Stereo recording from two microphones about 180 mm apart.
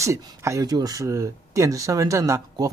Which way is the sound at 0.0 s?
20° right (ahead or behind).